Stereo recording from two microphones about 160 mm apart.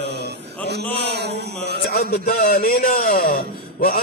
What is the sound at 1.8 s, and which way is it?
A man's voice, 75° left (ahead or behind).